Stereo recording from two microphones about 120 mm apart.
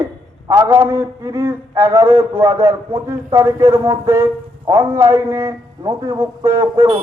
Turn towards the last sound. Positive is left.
turn(degrees=-20)  # may be behind; listen again after turning